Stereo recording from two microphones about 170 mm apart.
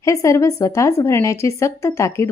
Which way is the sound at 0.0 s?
20° left (ahead or behind).